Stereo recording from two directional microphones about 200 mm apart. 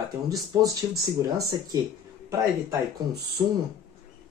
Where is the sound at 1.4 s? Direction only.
20° right (ahead or behind).